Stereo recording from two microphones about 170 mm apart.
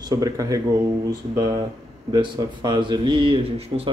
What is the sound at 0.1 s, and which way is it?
Speech, 20° right (ahead or behind).